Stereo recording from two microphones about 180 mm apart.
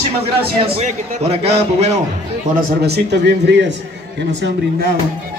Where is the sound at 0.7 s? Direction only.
35° right (ahead or behind).